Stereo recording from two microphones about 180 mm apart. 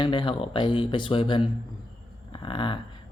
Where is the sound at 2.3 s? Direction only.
30° left (ahead or behind).